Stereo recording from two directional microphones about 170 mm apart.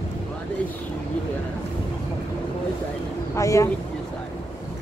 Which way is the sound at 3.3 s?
20° left (ahead or behind).